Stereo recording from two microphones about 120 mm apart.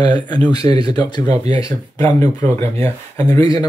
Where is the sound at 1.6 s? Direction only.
30° left (ahead or behind).